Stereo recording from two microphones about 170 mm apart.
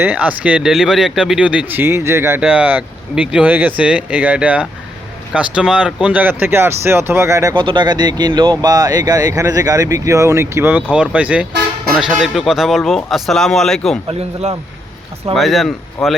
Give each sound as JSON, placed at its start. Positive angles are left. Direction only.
{"t": 0.0, "sound": "speech", "side_deg": -10}
{"t": 7.5, "sound": "speech", "side_deg": -30}
{"t": 14.1, "sound": "speech", "side_deg": -35}
{"t": 15.4, "sound": "speech", "side_deg": 0}